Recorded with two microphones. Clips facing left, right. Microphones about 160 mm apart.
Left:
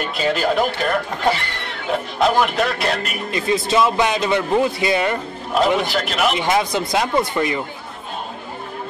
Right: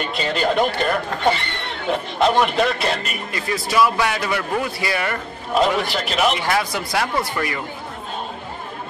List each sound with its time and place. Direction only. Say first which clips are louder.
0.0 s speech: left 2 dB; centre (ahead or behind)
3.3 s a man's voice: left 6 dB; 20° left (ahead or behind)
5.5 s speech: left 1 dB; centre (ahead or behind)
6.3 s a man's voice: left 3 dB; 20° left (ahead or behind)